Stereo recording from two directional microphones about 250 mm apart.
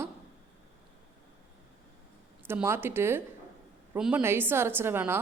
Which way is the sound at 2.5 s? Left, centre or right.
Centre.